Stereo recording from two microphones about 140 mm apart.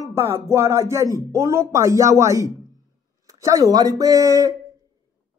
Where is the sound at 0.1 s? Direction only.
20° right (ahead or behind).